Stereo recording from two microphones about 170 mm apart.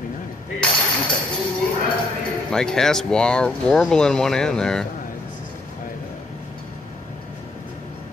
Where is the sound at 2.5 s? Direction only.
5° left (ahead or behind).